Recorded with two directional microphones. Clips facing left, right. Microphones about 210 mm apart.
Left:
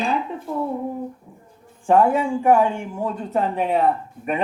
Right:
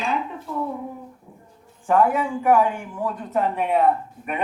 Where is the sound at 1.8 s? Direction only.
30° left (ahead or behind).